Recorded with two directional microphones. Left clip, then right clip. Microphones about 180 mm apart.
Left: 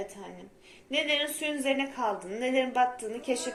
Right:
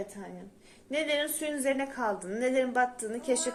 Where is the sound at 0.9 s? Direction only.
90° right.